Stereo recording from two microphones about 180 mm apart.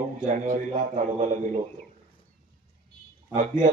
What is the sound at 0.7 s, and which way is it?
Speech, 45° right (ahead or behind).